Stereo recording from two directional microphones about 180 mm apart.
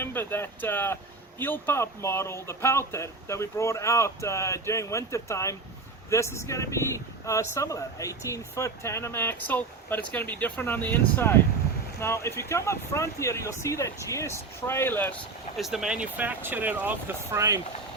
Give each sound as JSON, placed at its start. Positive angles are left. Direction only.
{"t": 0.0, "sound": "speech", "side_deg": 10}
{"t": 15.5, "sound": "speech", "side_deg": 0}